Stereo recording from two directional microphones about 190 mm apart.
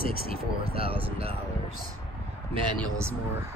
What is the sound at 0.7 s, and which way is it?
Speech, 30° right (ahead or behind).